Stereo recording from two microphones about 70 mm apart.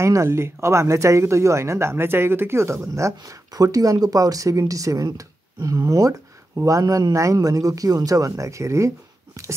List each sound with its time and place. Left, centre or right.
0.0 s speech: right
3.5 s speech: right